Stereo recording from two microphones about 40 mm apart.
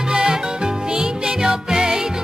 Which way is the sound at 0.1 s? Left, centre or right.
Centre.